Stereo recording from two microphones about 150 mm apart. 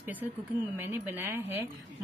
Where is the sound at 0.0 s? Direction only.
10° right (ahead or behind).